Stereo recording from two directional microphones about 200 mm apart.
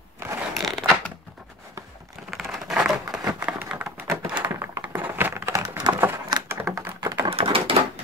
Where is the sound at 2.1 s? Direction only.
Centre (ahead or behind).